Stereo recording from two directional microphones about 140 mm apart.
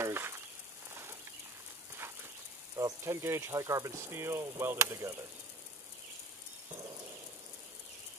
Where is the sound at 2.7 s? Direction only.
25° right (ahead or behind).